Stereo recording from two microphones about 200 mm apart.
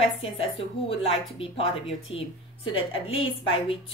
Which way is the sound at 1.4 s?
30° left (ahead or behind).